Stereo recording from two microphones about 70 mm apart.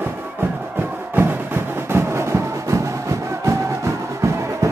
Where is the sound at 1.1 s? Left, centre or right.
Right.